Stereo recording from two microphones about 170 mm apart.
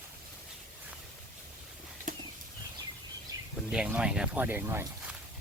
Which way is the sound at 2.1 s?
50° right (ahead or behind).